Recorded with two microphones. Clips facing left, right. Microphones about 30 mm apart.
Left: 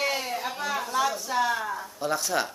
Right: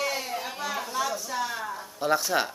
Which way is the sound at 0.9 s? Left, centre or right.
Centre.